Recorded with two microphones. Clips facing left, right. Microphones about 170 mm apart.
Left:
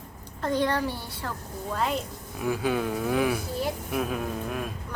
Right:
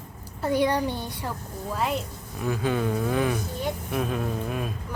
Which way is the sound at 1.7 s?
5° right (ahead or behind).